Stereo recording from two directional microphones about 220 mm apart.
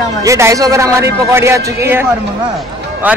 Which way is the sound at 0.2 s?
15° right (ahead or behind).